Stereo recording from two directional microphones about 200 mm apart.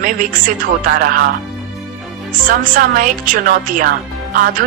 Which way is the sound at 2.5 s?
45° right (ahead or behind).